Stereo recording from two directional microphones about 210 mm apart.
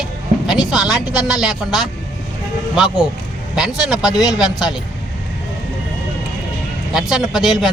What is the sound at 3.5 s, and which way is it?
Speech, centre (ahead or behind).